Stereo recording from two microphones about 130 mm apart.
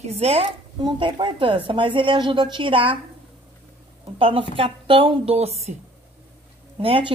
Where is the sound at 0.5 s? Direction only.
35° right (ahead or behind).